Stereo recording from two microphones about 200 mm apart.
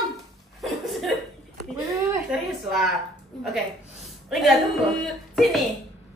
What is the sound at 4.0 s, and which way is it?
A woman's voice, centre (ahead or behind).